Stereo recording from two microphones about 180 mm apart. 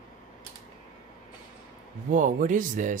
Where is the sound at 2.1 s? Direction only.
45° right (ahead or behind).